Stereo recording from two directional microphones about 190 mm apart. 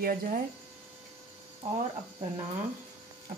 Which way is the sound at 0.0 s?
45° right (ahead or behind).